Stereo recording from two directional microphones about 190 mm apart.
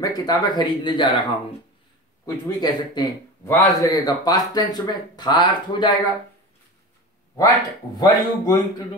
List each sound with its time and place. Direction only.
0.0 s a man's voice: 20° left (ahead or behind)
8.0 s a man's voice: 20° left (ahead or behind)